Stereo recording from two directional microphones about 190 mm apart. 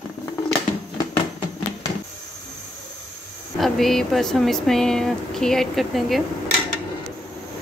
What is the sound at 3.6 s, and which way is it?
Speech, centre (ahead or behind).